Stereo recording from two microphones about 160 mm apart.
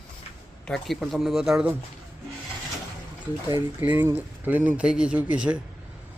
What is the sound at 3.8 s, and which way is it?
Speech, 15° right (ahead or behind).